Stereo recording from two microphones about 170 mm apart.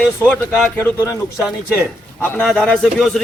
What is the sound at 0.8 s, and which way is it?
Speech, 15° left (ahead or behind).